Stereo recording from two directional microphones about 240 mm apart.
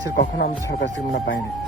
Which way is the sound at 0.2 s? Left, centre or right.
Left.